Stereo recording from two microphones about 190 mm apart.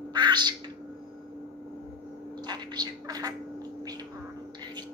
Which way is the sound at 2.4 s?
20° right (ahead or behind).